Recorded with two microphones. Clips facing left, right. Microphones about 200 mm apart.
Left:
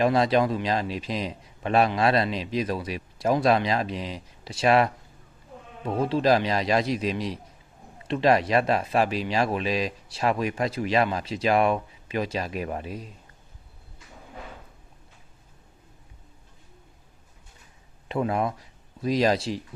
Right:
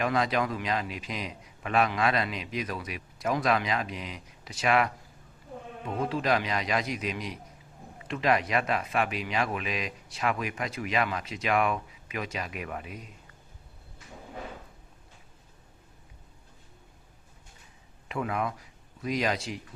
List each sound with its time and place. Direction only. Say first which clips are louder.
0.0 s speech: left 6 dB; 30° left (ahead or behind)
18.1 s speech: left 5 dB; 30° left (ahead or behind)